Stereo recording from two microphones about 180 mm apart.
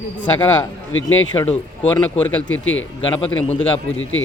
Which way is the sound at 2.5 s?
90° left.